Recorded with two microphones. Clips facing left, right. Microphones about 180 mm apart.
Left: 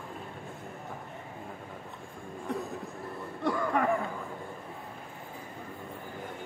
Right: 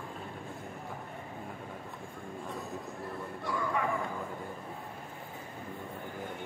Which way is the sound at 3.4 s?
55° left (ahead or behind).